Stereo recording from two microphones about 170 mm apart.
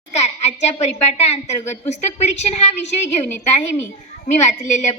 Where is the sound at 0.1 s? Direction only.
40° left (ahead or behind).